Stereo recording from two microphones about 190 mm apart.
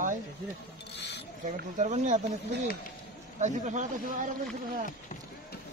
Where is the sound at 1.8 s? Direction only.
40° right (ahead or behind).